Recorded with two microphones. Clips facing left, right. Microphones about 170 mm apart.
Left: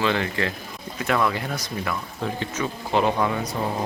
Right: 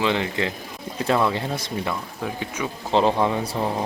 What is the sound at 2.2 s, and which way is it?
Speech, 10° right (ahead or behind).